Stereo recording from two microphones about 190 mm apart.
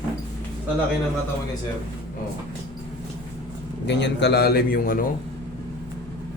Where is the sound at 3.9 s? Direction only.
65° left (ahead or behind); by 5.1 s 50° left (ahead or behind).